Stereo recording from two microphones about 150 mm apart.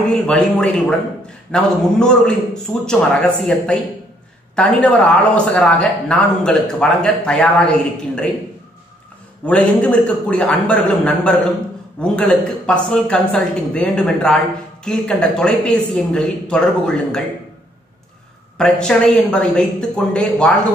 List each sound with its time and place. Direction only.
0.1 s a man's voice: 5° left (ahead or behind)
9.5 s a man's voice: 10° left (ahead or behind)
18.6 s a man's voice: 5° left (ahead or behind)